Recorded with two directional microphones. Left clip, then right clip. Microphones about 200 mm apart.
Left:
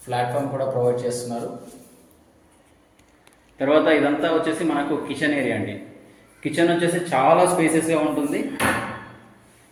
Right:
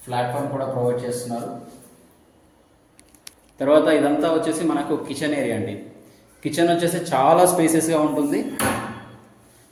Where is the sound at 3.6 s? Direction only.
10° right (ahead or behind).